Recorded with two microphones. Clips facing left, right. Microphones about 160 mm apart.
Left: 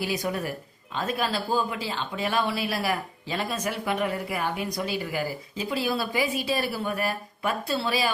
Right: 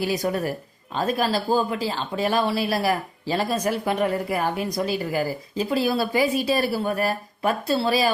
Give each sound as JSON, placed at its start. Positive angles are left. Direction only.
{"t": 0.0, "sound": "speech", "side_deg": -40}